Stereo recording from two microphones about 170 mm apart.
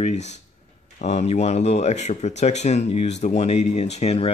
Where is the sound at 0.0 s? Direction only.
40° left (ahead or behind).